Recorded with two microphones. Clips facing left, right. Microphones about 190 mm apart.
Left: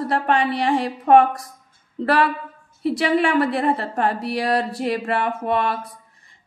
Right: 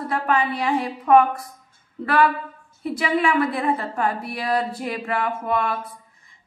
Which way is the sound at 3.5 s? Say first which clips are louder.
Left 2 dB; 30° left (ahead or behind).